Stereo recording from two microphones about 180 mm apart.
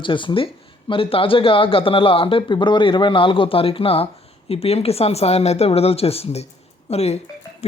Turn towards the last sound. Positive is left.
turn(degrees=35)  # may be behind; listen again after turning